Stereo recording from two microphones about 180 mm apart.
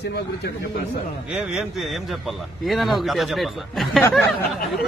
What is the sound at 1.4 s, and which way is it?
Speech, 5° right (ahead or behind).